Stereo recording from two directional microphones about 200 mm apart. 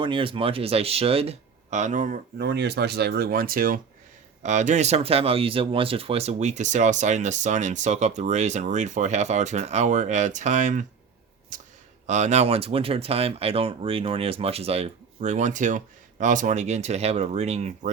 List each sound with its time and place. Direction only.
0.0 s speech: 25° right (ahead or behind)